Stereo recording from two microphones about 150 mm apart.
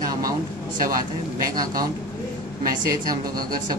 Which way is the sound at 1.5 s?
70° right (ahead or behind).